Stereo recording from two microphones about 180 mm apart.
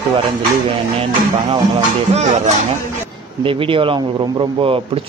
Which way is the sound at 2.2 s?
40° right (ahead or behind).